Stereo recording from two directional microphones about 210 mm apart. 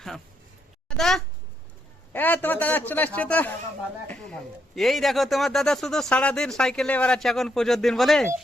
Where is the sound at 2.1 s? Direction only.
10° left (ahead or behind).